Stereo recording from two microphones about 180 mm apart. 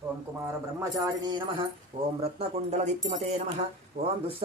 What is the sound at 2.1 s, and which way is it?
Speech, 35° right (ahead or behind).